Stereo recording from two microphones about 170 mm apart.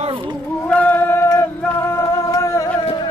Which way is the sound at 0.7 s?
10° left (ahead or behind).